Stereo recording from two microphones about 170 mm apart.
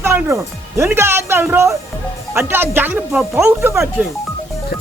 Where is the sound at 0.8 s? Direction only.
15° right (ahead or behind).